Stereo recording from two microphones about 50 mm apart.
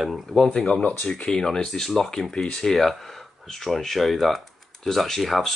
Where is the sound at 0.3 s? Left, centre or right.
Centre.